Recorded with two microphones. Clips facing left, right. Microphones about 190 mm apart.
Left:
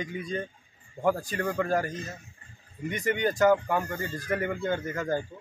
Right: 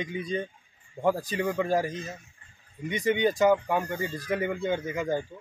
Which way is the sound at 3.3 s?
Centre (ahead or behind).